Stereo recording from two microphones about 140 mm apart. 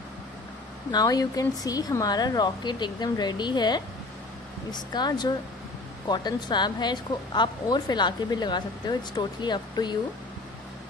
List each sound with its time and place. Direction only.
0.9 s speech: 30° left (ahead or behind)